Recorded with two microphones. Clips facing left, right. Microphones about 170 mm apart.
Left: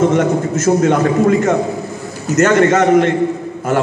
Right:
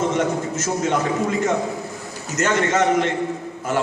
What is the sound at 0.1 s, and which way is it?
A man's voice, 60° left (ahead or behind).